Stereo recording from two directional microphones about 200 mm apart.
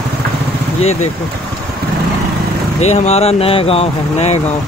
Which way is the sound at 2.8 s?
35° left (ahead or behind).